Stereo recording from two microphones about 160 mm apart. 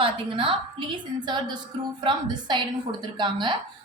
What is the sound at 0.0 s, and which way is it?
A woman's voice, 35° right (ahead or behind).